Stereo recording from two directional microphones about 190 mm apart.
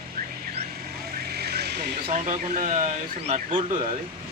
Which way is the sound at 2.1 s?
35° right (ahead or behind).